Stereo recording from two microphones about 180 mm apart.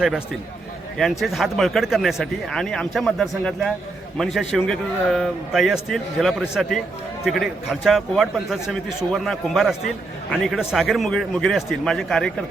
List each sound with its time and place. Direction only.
0.9 s speech: centre (ahead or behind)